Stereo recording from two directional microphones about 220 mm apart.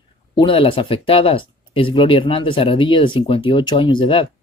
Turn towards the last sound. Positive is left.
turn(degrees=20)  # may be behind; listen again after turning